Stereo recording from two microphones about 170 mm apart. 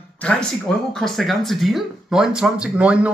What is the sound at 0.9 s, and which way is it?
Speech, centre (ahead or behind).